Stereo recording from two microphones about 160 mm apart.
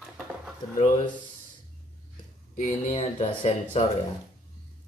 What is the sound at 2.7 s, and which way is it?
Speech, 40° left (ahead or behind).